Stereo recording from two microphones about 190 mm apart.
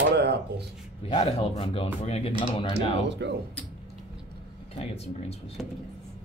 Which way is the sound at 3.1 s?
65° right (ahead or behind).